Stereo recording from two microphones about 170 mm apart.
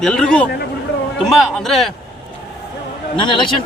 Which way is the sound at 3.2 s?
30° left (ahead or behind).